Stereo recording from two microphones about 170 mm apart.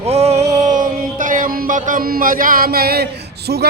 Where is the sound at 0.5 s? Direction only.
45° right (ahead or behind).